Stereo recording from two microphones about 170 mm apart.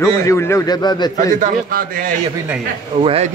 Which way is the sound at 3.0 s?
35° right (ahead or behind).